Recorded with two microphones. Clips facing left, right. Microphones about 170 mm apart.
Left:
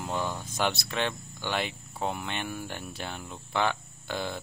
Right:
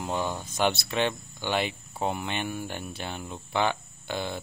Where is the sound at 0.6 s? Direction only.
5° right (ahead or behind).